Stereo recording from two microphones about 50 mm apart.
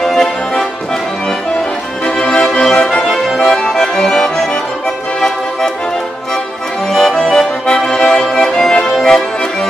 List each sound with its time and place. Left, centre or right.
0.0 s music: centre
2.0 s music: centre
3.0 s accordion: centre
6.9 s accordion: centre